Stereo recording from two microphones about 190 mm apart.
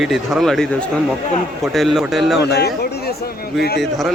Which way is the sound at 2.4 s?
60° left (ahead or behind).